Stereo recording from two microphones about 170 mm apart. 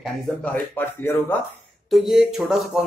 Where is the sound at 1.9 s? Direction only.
Centre (ahead or behind).